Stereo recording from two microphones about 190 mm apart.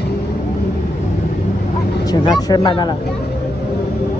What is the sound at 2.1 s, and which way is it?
Speech, 20° left (ahead or behind).